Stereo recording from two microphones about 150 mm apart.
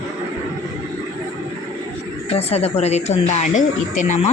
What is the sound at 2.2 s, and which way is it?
Speech, 40° left (ahead or behind).